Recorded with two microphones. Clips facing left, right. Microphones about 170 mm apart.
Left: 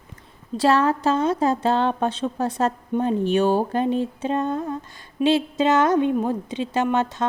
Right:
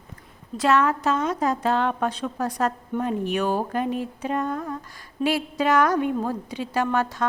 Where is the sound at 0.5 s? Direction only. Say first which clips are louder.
Left 2 dB; 30° left (ahead or behind).